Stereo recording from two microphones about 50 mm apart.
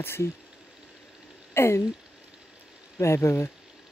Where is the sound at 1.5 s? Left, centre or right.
Left.